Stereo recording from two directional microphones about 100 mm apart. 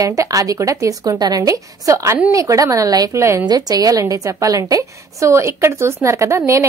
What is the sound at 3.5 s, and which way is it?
A woman's voice, 40° right (ahead or behind).